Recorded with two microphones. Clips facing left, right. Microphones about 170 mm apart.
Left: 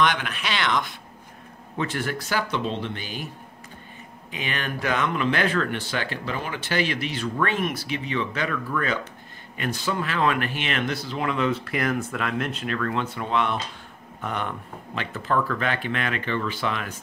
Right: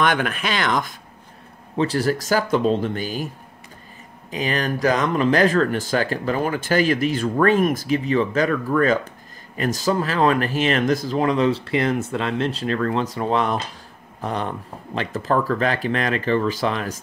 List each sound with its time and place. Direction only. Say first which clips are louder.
0.0 s speech: right 3 dB; 50° right (ahead or behind)
4.3 s speech: right 7 dB; 40° right (ahead or behind)